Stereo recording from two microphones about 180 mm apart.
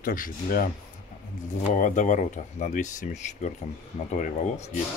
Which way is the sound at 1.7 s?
45° left (ahead or behind).